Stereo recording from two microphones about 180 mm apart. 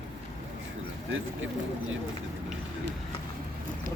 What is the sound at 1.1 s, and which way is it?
Speech, 90° right.